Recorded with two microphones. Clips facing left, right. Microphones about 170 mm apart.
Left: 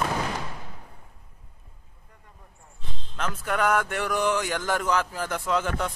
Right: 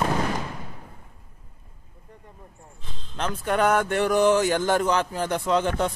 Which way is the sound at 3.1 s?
30° right (ahead or behind).